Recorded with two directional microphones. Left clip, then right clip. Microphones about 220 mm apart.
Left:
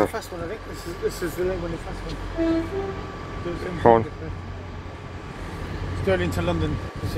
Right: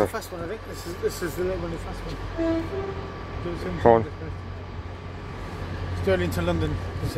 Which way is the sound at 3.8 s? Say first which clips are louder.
Left 1 dB; centre (ahead or behind).